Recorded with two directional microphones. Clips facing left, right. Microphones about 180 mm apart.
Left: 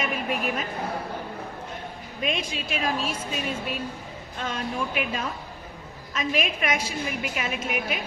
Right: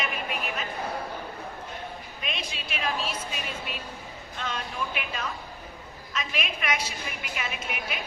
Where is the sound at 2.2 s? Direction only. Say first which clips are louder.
Left 9 dB; 45° left (ahead or behind).